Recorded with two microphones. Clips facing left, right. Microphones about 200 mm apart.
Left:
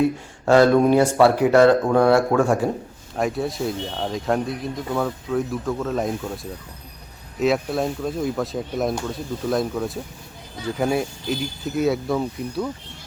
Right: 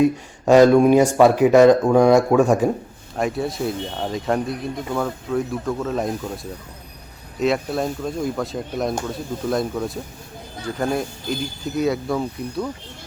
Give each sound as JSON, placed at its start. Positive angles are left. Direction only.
{"t": 0.0, "sound": "speech", "side_deg": -15}
{"t": 3.2, "sound": "speech", "side_deg": 0}